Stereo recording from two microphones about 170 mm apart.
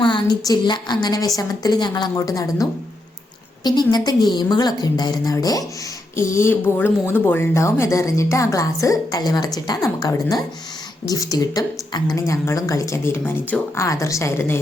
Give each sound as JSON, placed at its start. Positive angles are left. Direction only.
{"t": 0.0, "sound": "a woman's voice", "side_deg": 25}